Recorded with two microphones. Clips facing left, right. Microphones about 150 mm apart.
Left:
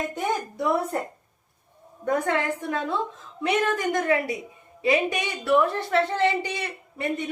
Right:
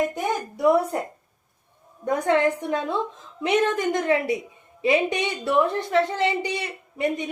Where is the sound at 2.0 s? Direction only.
20° right (ahead or behind).